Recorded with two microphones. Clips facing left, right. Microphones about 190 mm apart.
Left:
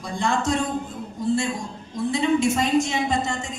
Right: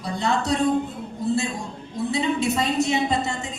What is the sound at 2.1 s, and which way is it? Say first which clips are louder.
A woman's voice: left 3 dB; 45° left (ahead or behind).